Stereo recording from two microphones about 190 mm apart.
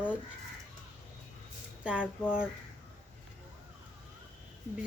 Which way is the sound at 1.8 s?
5° right (ahead or behind).